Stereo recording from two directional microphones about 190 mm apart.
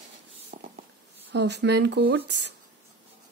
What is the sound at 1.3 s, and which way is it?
Speech, 65° right (ahead or behind).